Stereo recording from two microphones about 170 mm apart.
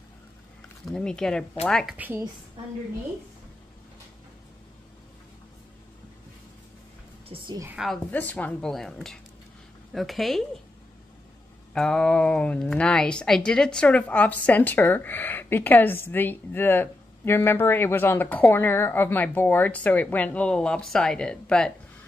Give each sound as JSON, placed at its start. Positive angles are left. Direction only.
{"t": 0.8, "sound": "speech", "side_deg": 5}
{"t": 2.0, "sound": "a woman's voice", "side_deg": -10}
{"t": 7.3, "sound": "a sound", "side_deg": -35}
{"t": 7.7, "sound": "speech", "side_deg": 0}
{"t": 8.1, "sound": "speech", "side_deg": 10}
{"t": 11.7, "sound": "speech", "side_deg": 5}